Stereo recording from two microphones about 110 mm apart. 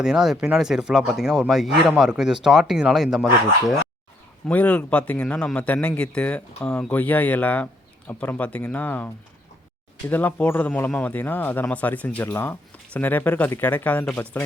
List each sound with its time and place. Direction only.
0.0 s speech: 5° right (ahead or behind)
4.4 s speech: 10° left (ahead or behind)
10.1 s speech: 15° left (ahead or behind)